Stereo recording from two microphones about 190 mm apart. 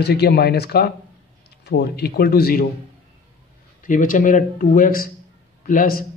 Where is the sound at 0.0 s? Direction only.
60° left (ahead or behind).